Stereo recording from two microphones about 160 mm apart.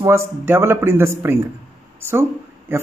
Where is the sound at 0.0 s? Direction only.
15° right (ahead or behind).